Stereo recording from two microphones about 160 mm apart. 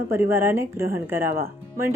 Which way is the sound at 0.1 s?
15° right (ahead or behind).